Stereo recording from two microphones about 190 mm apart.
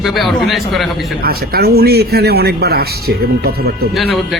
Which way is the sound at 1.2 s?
55° right (ahead or behind).